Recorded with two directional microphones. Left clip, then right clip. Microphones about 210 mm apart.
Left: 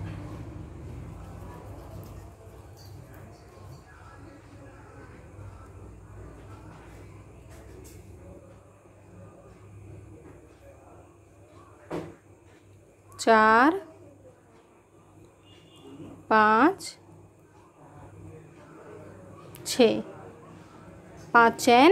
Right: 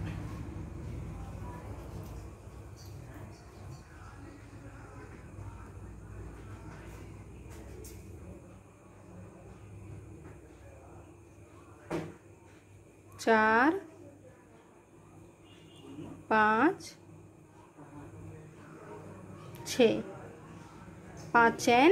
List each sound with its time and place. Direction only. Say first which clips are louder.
13.2 s a woman's voice: left 6 dB; 15° left (ahead or behind)
16.3 s a woman's voice: left 6 dB; 15° left (ahead or behind)
19.6 s a sound: left 4 dB; 15° left (ahead or behind)
21.3 s a woman's voice: left 6 dB; 15° left (ahead or behind)